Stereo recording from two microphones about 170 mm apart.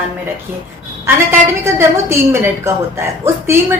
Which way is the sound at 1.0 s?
15° right (ahead or behind).